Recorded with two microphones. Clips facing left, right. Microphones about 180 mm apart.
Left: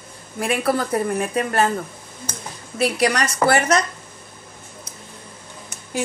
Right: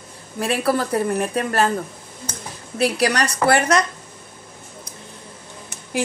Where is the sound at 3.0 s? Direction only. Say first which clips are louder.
Even; 65° right (ahead or behind).